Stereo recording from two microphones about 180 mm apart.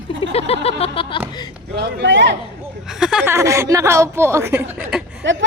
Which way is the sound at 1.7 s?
70° right (ahead or behind).